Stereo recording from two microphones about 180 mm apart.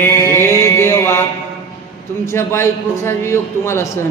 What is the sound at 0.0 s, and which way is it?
Mantra, 15° left (ahead or behind).